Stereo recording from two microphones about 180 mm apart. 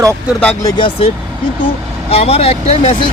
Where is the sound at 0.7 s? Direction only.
25° left (ahead or behind).